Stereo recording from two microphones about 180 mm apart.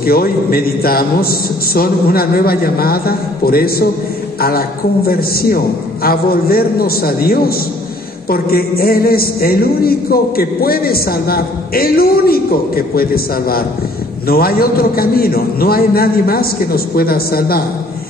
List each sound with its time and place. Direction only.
0.0 s speech: 55° left (ahead or behind)